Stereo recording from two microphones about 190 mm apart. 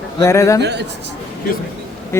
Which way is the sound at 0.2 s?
15° left (ahead or behind).